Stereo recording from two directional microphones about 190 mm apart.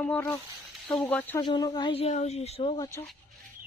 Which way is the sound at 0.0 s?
10° left (ahead or behind).